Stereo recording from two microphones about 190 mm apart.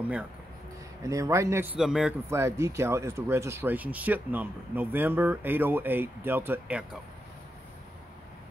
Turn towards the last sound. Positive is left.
turn(degrees=-10)  # may be behind; listen again after turning